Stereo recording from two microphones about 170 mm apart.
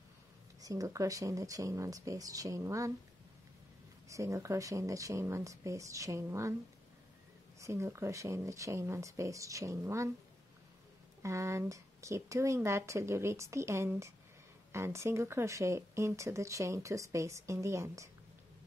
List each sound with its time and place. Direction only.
0.6 s speech: 20° right (ahead or behind)
4.1 s speech: 15° right (ahead or behind)
7.6 s speech: 15° right (ahead or behind)
11.2 s speech: 15° right (ahead or behind)